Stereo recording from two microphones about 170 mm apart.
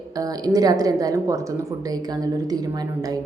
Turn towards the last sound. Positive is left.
turn(degrees=-20)  # may be behind; listen again after turning